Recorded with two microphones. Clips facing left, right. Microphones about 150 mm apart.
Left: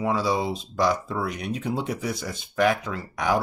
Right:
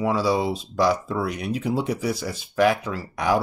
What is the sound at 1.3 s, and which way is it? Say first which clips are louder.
Speech: right 3 dB; 10° right (ahead or behind).